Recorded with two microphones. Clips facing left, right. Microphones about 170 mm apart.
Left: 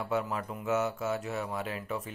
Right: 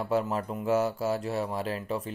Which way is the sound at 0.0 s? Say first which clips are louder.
Right 4 dB; 35° right (ahead or behind).